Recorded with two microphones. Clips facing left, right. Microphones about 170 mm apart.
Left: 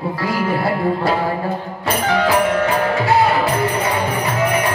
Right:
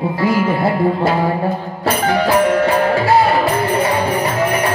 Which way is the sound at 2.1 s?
35° right (ahead or behind).